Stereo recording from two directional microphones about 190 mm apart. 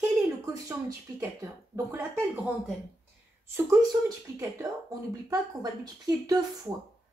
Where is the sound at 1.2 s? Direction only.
15° right (ahead or behind).